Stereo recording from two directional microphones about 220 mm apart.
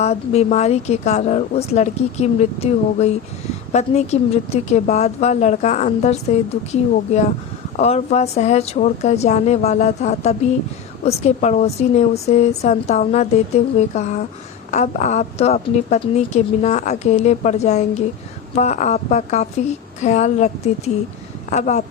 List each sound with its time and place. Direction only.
0.0 s a woman's voice: 30° left (ahead or behind)